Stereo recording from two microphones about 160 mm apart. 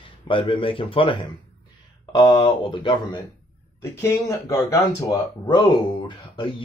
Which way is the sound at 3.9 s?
20° left (ahead or behind).